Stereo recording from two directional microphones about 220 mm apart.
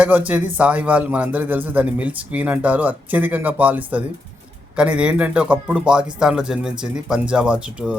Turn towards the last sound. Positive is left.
turn(degrees=-5)  # may be behind; listen again after turning